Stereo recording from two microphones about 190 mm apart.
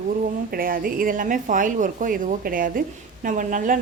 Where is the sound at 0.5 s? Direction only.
50° right (ahead or behind).